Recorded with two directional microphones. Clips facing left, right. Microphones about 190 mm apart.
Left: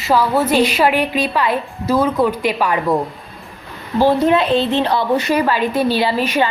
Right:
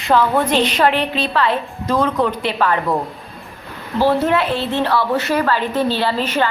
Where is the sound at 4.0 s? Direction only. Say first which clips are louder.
Left 2 dB; 15° left (ahead or behind).